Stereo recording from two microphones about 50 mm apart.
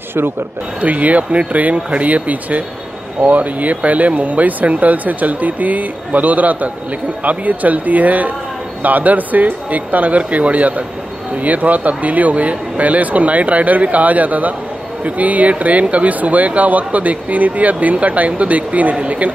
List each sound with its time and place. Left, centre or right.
0.7 s speech: right